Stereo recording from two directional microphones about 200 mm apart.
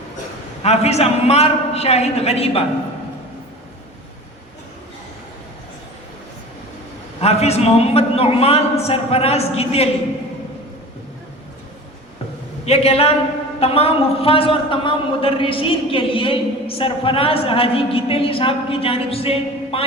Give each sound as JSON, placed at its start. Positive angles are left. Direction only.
{"t": 0.6, "sound": "a man's voice", "side_deg": 30}
{"t": 7.2, "sound": "a man's voice", "side_deg": 30}
{"t": 12.6, "sound": "a man's voice", "side_deg": 30}